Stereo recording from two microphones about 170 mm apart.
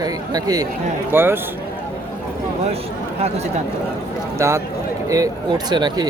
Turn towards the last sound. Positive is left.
turn(degrees=-25)  # may be behind; listen again after turning